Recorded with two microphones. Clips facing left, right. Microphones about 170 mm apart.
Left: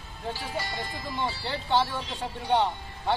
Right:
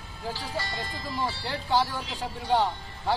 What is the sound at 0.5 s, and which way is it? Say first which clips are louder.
Speech: even; 20° left (ahead or behind).